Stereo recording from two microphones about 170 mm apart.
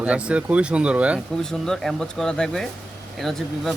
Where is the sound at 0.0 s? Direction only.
5° right (ahead or behind).